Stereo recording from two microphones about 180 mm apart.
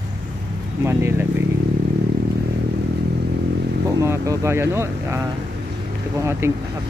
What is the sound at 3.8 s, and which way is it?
Speech, 15° right (ahead or behind).